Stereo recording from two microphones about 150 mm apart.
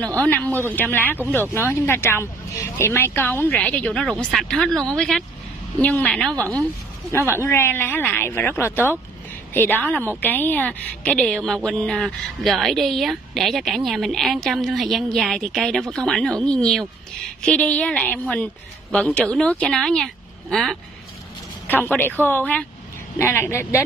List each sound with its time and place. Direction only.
0.2 s speech: 10° left (ahead or behind)
7.3 s a woman's voice: 15° left (ahead or behind)
21.6 s speech: 10° left (ahead or behind)